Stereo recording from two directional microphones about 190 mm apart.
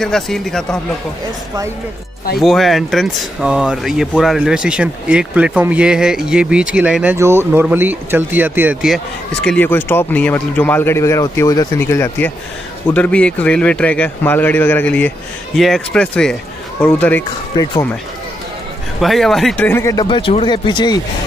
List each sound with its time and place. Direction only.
0.0 s speech: 5° left (ahead or behind)
2.4 s speech: centre (ahead or behind)
18.9 s speech: centre (ahead or behind); by 21.0 s 25° left (ahead or behind)